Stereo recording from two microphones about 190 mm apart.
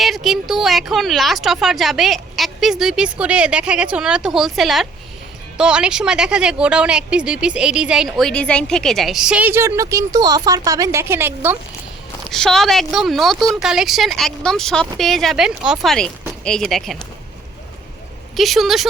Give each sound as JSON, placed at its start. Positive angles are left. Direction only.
{"t": 0.0, "sound": "a woman's voice", "side_deg": 0}
{"t": 12.2, "sound": "a woman's voice", "side_deg": 0}
{"t": 18.3, "sound": "a woman's voice", "side_deg": 0}